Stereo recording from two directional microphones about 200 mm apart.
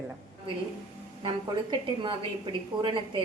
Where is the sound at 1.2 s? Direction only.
25° right (ahead or behind).